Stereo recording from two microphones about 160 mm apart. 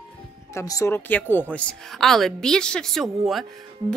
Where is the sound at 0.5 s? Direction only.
20° left (ahead or behind).